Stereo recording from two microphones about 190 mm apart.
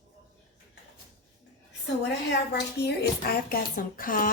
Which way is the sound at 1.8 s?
60° left (ahead or behind).